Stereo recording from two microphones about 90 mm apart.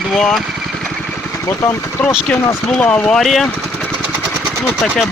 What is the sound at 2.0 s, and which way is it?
Speech, 15° left (ahead or behind).